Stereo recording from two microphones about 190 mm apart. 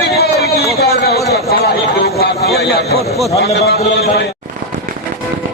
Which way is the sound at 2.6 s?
55° left (ahead or behind).